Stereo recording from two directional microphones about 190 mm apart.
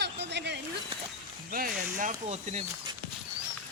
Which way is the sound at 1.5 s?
45° right (ahead or behind).